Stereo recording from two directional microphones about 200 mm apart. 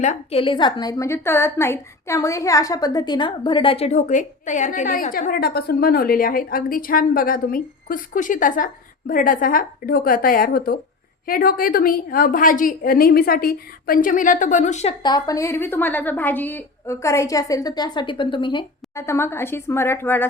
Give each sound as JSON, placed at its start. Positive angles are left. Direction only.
{"t": 0.0, "sound": "a woman's voice", "side_deg": 35}
{"t": 15.0, "sound": "a woman's voice", "side_deg": 20}